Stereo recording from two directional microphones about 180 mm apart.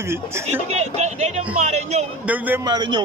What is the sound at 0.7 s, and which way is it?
Speech, 40° right (ahead or behind).